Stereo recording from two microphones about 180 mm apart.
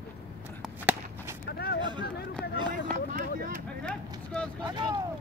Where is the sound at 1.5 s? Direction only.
60° left (ahead or behind).